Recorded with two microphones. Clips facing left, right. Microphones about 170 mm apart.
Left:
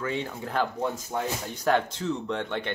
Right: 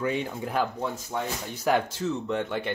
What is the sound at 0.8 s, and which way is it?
Speech, 5° left (ahead or behind).